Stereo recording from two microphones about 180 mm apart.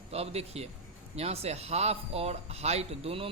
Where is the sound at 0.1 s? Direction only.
35° right (ahead or behind).